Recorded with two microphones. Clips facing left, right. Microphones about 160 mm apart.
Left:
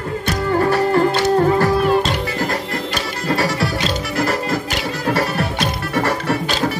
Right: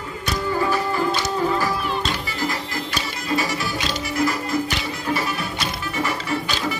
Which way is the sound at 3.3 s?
70° left (ahead or behind).